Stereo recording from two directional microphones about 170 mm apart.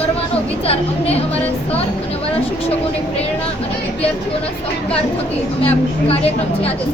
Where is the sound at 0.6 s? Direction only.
35° left (ahead or behind).